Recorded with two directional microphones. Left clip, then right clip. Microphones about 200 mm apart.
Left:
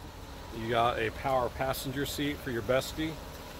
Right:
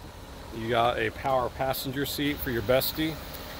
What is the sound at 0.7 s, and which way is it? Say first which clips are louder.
Speech: right 3 dB; 45° right (ahead or behind).